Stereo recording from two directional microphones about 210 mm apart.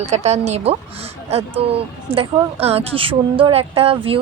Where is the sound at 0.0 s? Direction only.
30° right (ahead or behind).